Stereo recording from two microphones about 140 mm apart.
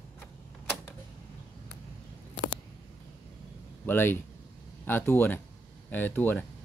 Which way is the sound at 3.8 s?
15° left (ahead or behind).